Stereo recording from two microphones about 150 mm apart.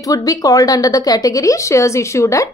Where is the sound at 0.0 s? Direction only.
25° left (ahead or behind).